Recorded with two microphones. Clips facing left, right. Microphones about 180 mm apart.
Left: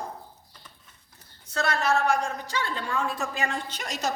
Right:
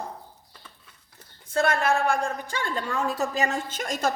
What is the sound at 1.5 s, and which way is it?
A woman's voice, 55° right (ahead or behind).